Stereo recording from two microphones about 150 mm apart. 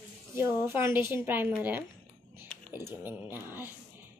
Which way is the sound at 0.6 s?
15° right (ahead or behind).